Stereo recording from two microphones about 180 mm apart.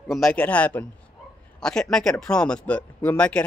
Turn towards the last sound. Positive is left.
turn(degrees=5)  # may be behind; listen again after turning